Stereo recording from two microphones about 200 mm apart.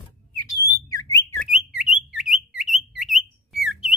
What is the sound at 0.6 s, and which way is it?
Whistle, 15° left (ahead or behind).